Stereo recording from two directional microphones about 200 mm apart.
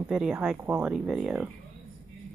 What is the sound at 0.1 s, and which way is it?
A woman's voice, 5° right (ahead or behind).